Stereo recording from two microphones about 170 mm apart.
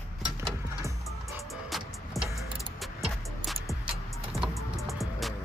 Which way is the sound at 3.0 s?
Centre (ahead or behind).